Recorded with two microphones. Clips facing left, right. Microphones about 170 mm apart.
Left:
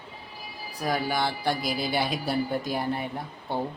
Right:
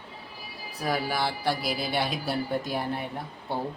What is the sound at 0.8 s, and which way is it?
Speech, centre (ahead or behind).